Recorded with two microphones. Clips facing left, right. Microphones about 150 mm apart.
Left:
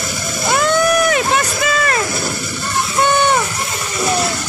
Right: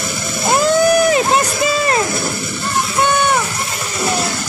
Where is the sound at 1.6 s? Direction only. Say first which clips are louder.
Right 2 dB; 25° right (ahead or behind).